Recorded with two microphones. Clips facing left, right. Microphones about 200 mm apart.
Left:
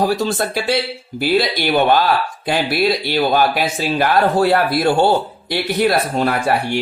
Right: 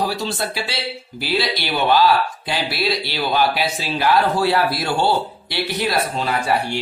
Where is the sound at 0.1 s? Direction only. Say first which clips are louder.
Left 6 dB; 50° left (ahead or behind).